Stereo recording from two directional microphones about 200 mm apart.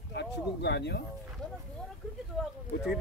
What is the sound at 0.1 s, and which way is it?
Speech, 55° left (ahead or behind).